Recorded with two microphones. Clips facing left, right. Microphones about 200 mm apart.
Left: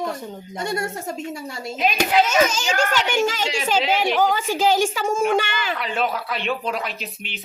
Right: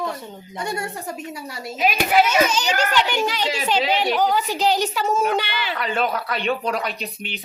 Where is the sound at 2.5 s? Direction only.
45° left (ahead or behind).